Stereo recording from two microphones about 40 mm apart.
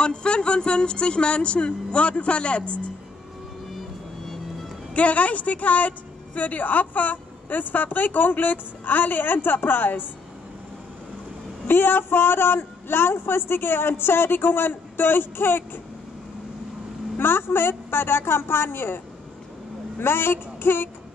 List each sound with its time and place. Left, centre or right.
0.0 s speech: left
4.9 s a woman's voice: left
11.6 s a woman's voice: left
17.2 s a woman's voice: left
20.0 s a woman's voice: left